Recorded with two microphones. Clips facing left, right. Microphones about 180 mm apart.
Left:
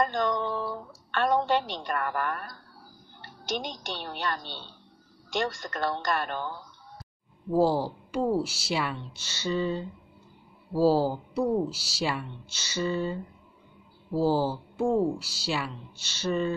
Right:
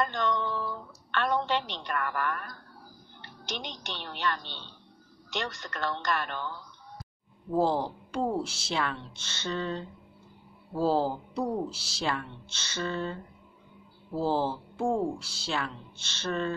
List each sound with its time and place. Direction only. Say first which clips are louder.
0.0 s a sound: left 3 dB; 45° left (ahead or behind)
3.2 s a woman's voice: left 6 dB; 45° left (ahead or behind)
7.5 s speech: left 3 dB; 5° left (ahead or behind)